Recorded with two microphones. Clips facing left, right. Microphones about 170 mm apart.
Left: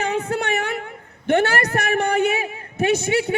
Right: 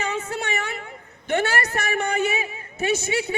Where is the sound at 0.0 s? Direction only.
55° left (ahead or behind).